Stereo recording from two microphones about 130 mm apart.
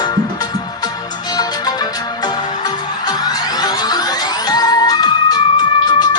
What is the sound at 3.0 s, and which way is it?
Music, 30° left (ahead or behind).